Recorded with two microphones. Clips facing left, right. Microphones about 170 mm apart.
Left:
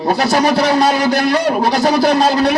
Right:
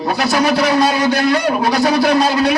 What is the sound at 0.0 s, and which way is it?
Speech, 30° left (ahead or behind).